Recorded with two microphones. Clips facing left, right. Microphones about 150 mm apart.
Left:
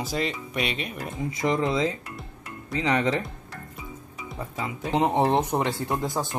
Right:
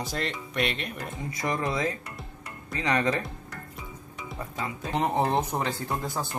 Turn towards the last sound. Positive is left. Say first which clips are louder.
# left 4 dB
turn(degrees=15)  # may be behind; listen again after turning